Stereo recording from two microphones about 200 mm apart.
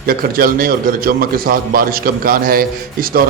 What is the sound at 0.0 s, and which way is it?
A man's voice, 45° right (ahead or behind).